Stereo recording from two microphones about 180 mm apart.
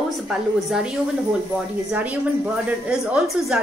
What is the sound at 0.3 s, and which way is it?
Speech, 5° right (ahead or behind).